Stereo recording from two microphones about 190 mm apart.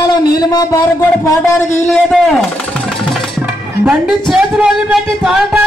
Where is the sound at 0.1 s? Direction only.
20° left (ahead or behind).